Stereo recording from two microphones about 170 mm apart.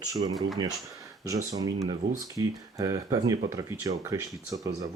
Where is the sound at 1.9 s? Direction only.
20° right (ahead or behind).